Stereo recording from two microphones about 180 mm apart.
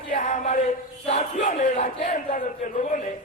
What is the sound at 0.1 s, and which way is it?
Chant, 40° left (ahead or behind).